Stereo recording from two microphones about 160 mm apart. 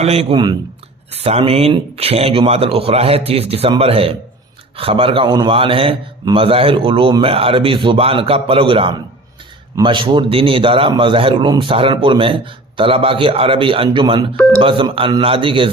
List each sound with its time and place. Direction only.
0.0 s a man's voice: 40° right (ahead or behind)